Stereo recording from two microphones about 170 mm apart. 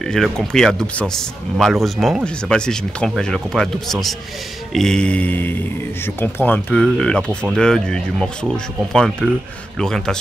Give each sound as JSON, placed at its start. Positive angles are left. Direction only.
{"t": 0.0, "sound": "speech", "side_deg": 0}